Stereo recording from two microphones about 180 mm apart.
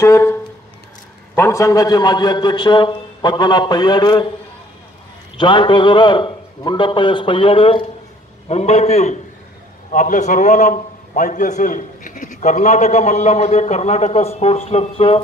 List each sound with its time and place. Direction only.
0.0 s a sound: 15° left (ahead or behind)
1.3 s a man's voice: 15° left (ahead or behind)
5.4 s a man's voice: 25° left (ahead or behind)